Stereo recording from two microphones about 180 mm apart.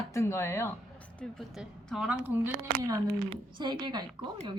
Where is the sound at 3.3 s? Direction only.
25° right (ahead or behind).